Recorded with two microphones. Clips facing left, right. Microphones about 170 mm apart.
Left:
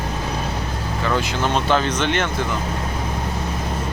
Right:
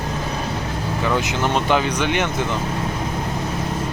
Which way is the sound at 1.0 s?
15° right (ahead or behind).